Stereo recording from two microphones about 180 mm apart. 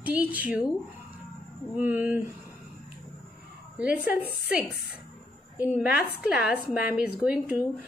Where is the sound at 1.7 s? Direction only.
10° right (ahead or behind).